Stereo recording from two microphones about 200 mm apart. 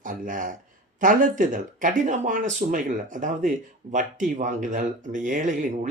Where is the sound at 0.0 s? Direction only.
40° right (ahead or behind).